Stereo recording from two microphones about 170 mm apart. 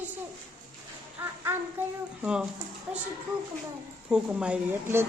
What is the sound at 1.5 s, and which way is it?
Child singing, 10° right (ahead or behind).